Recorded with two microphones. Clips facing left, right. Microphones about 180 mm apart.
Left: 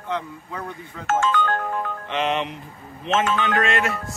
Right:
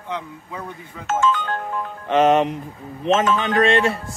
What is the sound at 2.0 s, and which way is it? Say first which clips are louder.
Music: right 10 dB; 45° right (ahead or behind).